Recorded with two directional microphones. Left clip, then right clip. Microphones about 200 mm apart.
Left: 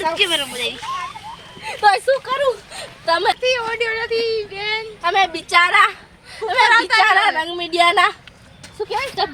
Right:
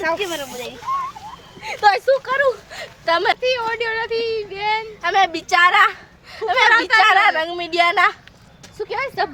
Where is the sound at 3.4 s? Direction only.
70° right (ahead or behind).